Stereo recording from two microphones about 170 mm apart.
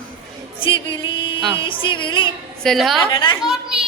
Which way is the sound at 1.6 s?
30° left (ahead or behind).